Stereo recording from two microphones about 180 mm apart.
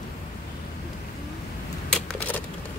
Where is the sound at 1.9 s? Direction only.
5° left (ahead or behind).